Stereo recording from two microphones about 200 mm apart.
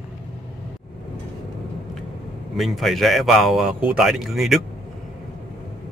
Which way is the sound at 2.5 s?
Centre (ahead or behind).